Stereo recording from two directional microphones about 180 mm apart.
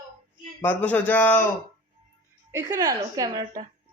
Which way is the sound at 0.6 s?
10° left (ahead or behind).